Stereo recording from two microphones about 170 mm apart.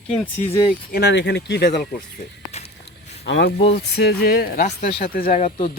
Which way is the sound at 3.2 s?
90° left.